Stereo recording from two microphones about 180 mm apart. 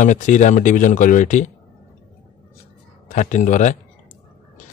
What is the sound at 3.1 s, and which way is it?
Speech, 45° left (ahead or behind).